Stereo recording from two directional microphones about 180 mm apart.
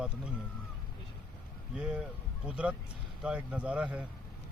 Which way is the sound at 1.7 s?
5° right (ahead or behind).